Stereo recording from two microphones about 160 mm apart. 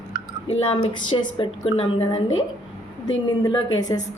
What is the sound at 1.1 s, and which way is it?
A woman's voice, 35° left (ahead or behind).